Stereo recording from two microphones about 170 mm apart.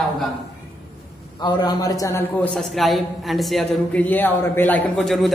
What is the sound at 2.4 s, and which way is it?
A man's voice, 5° left (ahead or behind).